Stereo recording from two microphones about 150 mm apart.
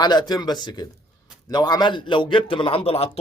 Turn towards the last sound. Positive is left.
turn(degrees=40)  # may be behind; listen again after turning